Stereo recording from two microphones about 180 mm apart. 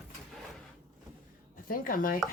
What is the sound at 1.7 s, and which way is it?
Speech, 50° left (ahead or behind).